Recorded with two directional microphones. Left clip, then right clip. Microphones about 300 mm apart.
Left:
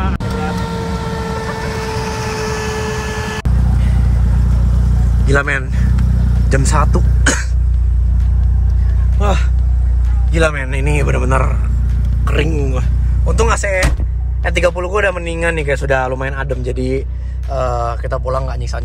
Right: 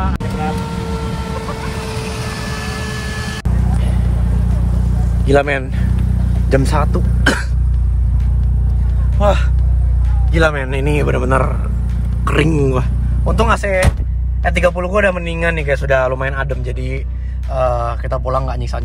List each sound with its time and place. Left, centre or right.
0.6 s vehicle: centre
5.2 s speech: centre
10.3 s speech: centre
12.3 s speech: centre
13.2 s speech: centre